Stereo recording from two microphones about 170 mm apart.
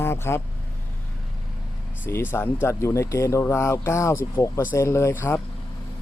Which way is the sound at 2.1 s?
15° left (ahead or behind).